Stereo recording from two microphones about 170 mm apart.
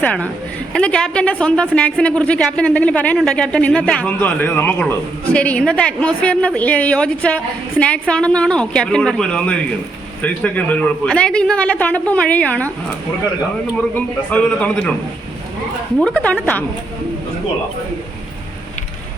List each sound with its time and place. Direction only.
0.0 s a man's voice: 10° left (ahead or behind)
14.3 s a man's voice: 5° left (ahead or behind)
16.0 s a man's voice: 5° left (ahead or behind)